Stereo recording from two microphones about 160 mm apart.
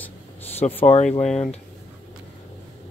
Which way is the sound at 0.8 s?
45° left (ahead or behind).